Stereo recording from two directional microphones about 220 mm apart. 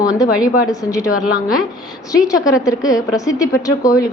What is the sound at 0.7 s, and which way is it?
Speech, 15° left (ahead or behind).